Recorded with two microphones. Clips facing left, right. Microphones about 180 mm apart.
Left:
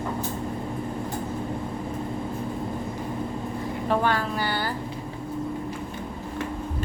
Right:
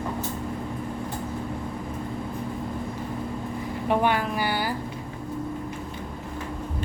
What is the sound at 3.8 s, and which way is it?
Speech, 15° right (ahead or behind).